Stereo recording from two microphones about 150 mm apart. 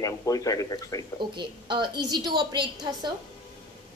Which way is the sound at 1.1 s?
30° right (ahead or behind).